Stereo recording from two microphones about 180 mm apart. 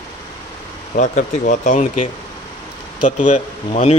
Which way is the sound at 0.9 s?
45° left (ahead or behind).